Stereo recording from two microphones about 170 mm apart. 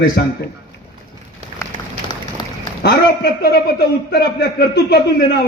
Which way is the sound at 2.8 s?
70° left (ahead or behind).